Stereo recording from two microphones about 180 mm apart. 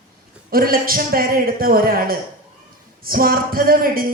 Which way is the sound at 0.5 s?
55° right (ahead or behind).